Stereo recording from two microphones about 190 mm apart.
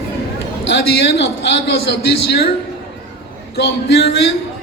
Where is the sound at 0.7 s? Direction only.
60° left (ahead or behind).